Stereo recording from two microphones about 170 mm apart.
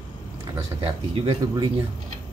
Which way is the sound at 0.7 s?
35° right (ahead or behind).